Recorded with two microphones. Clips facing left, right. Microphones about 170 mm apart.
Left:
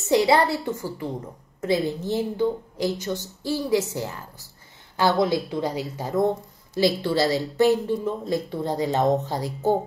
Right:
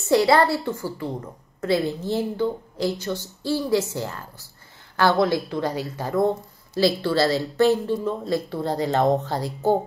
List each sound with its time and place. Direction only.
0.1 s a woman's voice: 15° left (ahead or behind)